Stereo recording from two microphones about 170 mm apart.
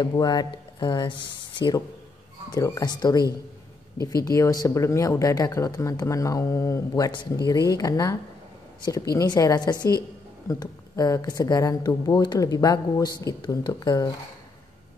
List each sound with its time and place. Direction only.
0.0 s speech: 25° left (ahead or behind)
2.5 s speech: 20° left (ahead or behind)